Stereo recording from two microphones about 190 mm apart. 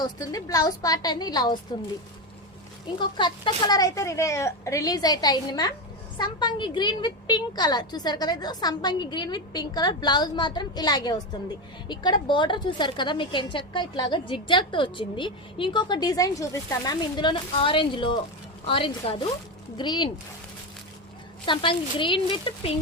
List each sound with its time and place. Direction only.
0.0 s a woman's voice: 20° left (ahead or behind)
3.0 s a woman's voice: 25° left (ahead or behind)
21.4 s a woman's voice: 25° left (ahead or behind)